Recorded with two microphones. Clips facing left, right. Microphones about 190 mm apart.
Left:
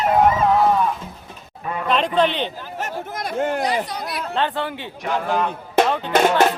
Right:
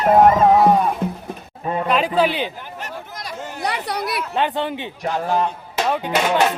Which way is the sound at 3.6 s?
65° right (ahead or behind).